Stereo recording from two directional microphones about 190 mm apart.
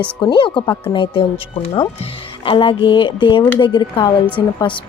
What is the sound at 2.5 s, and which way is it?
Speech, 25° left (ahead or behind).